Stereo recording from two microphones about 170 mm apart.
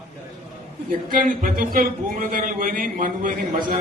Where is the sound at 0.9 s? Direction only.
55° right (ahead or behind).